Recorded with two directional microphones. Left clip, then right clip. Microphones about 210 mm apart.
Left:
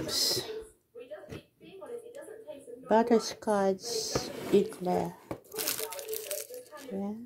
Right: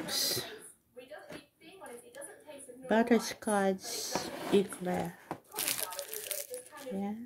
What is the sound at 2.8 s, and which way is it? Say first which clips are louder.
Speech: left 3 dB; 5° right (ahead or behind).